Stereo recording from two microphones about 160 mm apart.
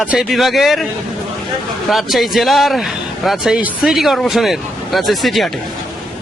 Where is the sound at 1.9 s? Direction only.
Centre (ahead or behind).